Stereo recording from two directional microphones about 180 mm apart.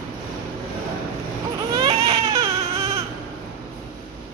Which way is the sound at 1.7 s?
20° right (ahead or behind).